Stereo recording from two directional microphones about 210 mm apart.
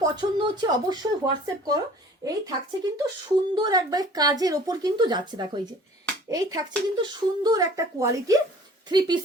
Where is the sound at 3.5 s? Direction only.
20° right (ahead or behind).